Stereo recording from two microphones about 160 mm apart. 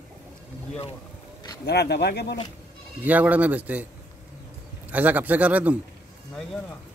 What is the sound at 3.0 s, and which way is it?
Speech, 10° right (ahead or behind).